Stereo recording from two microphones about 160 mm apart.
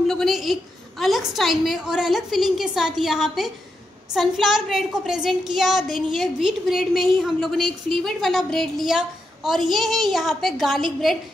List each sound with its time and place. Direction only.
0.1 s a woman's voice: centre (ahead or behind)